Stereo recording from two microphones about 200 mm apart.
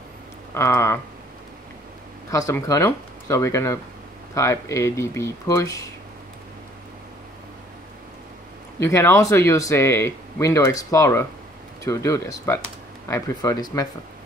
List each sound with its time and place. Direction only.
0.6 s speech: 15° left (ahead or behind)
2.3 s speech: 15° left (ahead or behind)
8.7 s speech: 15° left (ahead or behind)